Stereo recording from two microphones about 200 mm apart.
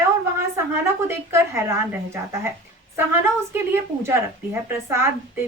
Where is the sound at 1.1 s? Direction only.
10° right (ahead or behind).